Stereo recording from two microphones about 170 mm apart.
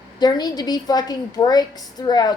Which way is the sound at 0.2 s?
25° left (ahead or behind).